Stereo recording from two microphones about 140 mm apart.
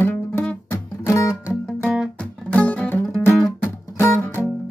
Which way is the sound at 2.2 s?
10° left (ahead or behind).